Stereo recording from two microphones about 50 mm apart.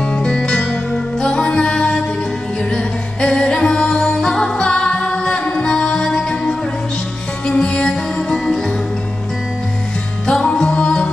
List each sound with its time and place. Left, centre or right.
0.0 s music: centre
10.2 s music: centre